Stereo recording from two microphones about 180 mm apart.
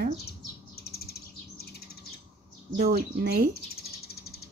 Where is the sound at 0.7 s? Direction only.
60° left (ahead or behind).